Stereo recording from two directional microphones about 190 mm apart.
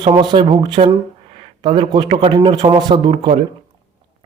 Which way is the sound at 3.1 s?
35° right (ahead or behind).